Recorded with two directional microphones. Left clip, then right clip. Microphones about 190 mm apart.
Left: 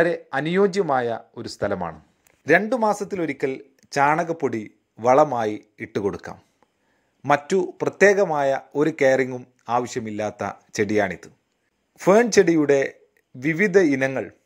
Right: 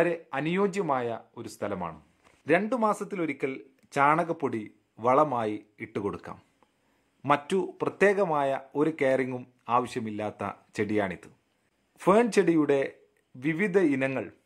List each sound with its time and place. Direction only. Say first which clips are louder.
0.0 s speech: left 6 dB; 20° left (ahead or behind)